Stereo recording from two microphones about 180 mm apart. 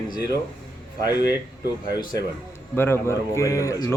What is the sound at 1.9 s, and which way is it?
A man's voice, 20° left (ahead or behind).